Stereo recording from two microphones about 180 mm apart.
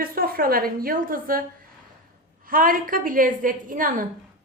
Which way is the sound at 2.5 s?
50° right (ahead or behind).